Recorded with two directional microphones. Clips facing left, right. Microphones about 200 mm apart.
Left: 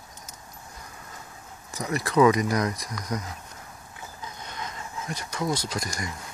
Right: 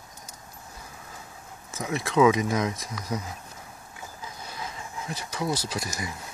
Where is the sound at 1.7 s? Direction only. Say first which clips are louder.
Left 1 dB; centre (ahead or behind).